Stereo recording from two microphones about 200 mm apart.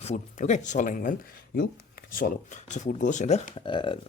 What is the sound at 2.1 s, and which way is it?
Speech, 40° left (ahead or behind).